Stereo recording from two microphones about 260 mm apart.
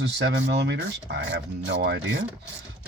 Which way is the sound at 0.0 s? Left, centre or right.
Right.